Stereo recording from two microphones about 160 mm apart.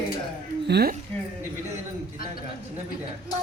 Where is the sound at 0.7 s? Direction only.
85° right.